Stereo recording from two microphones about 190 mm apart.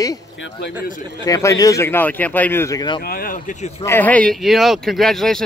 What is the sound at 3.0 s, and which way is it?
Speech, 50° left (ahead or behind).